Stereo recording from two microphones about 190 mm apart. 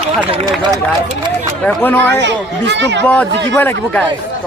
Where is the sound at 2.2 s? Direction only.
65° right (ahead or behind).